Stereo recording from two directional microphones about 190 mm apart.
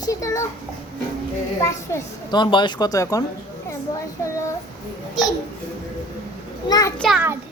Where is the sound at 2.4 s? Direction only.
25° left (ahead or behind).